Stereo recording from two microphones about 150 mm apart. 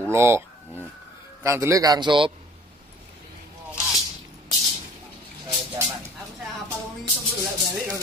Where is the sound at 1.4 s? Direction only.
20° right (ahead or behind).